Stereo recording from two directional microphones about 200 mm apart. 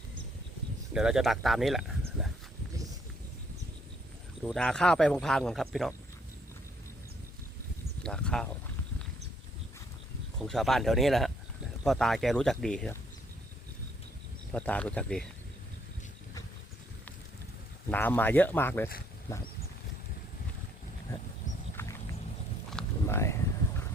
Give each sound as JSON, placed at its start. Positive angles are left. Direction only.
{"t": 0.9, "sound": "speech", "side_deg": -5}
{"t": 4.4, "sound": "speech", "side_deg": 5}
{"t": 8.0, "sound": "speech", "side_deg": 5}
{"t": 10.4, "sound": "speech", "side_deg": 0}
{"t": 14.5, "sound": "speech", "side_deg": 5}
{"t": 17.9, "sound": "speech", "side_deg": 10}
{"t": 23.0, "sound": "a sound", "side_deg": 15}